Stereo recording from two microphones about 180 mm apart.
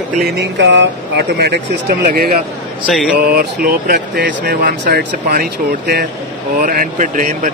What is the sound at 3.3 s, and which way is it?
Speech, 55° right (ahead or behind).